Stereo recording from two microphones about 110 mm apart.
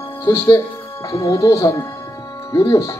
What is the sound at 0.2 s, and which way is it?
Speech, 25° left (ahead or behind).